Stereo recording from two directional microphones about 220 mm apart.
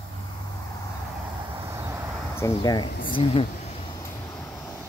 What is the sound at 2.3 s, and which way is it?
Speech, 15° left (ahead or behind).